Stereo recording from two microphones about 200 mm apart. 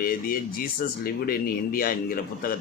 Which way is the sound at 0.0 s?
45° left (ahead or behind).